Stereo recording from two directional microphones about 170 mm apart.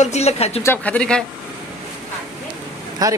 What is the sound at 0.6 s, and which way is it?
Speech, 10° left (ahead or behind).